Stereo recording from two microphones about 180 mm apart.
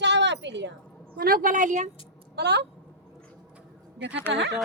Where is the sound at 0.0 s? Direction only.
75° right (ahead or behind).